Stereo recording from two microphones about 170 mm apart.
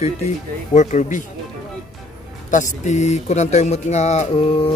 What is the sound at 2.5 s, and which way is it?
Speech, 45° left (ahead or behind).